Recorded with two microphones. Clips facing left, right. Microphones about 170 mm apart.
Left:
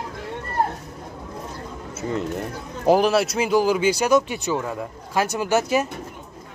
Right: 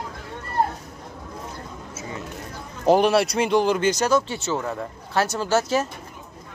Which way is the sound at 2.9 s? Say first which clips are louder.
Even; centre (ahead or behind).